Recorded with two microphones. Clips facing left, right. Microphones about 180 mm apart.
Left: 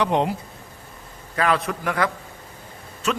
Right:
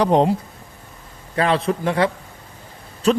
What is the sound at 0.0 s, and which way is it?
Speech, 35° right (ahead or behind).